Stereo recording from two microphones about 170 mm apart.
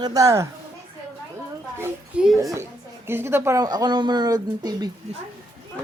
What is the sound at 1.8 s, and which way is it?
Speech, 10° right (ahead or behind).